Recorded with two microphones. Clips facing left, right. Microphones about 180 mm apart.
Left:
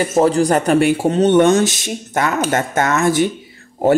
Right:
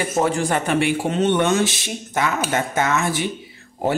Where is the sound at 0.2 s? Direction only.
35° left (ahead or behind).